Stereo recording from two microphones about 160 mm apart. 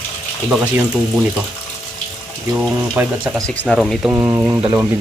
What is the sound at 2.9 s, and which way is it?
Speech, 10° right (ahead or behind).